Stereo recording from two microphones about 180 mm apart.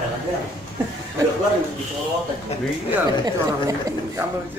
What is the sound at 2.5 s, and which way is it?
Speech, 35° left (ahead or behind).